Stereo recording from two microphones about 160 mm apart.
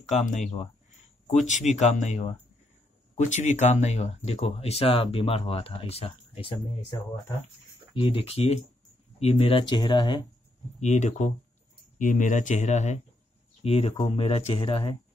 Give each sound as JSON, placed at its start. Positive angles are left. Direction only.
{"t": 0.1, "sound": "speech", "side_deg": 50}
{"t": 7.9, "sound": "speech", "side_deg": 35}
{"t": 10.8, "sound": "speech", "side_deg": 45}